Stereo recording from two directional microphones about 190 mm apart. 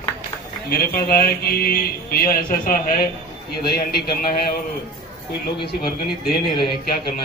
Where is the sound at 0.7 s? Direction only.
50° left (ahead or behind).